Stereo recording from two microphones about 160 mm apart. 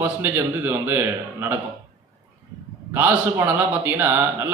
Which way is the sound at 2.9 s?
15° right (ahead or behind).